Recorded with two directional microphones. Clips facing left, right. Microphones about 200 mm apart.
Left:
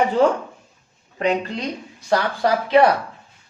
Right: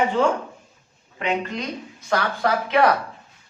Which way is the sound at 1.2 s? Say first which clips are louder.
Left 4 dB; 35° left (ahead or behind).